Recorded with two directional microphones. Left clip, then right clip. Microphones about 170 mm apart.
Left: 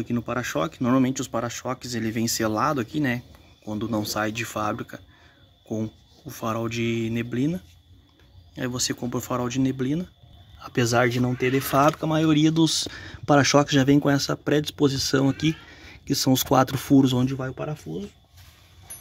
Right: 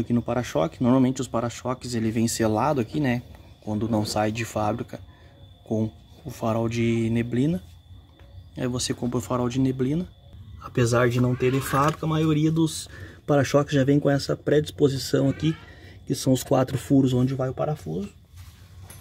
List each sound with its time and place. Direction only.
0.0 s speech: centre (ahead or behind)
10.6 s speech: 20° left (ahead or behind)